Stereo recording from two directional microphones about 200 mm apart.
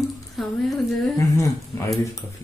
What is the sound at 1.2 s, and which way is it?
Speech, 15° left (ahead or behind).